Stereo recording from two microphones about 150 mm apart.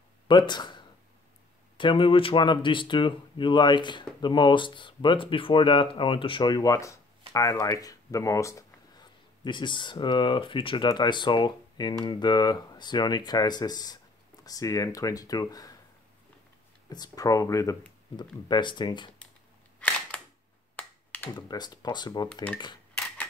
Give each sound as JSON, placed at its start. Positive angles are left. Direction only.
{"t": 0.3, "sound": "speech", "side_deg": 30}
{"t": 16.9, "sound": "speech", "side_deg": 25}
{"t": 20.7, "sound": "finger snapping", "side_deg": 10}
{"t": 21.4, "sound": "speech", "side_deg": 30}
{"t": 22.3, "sound": "speech", "side_deg": 10}
{"t": 22.9, "sound": "a sound", "side_deg": 10}